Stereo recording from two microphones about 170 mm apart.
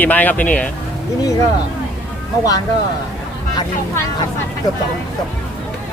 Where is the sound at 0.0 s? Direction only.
10° left (ahead or behind).